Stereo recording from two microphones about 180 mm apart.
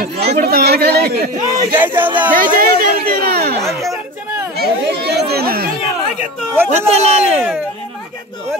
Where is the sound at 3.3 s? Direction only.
60° right (ahead or behind).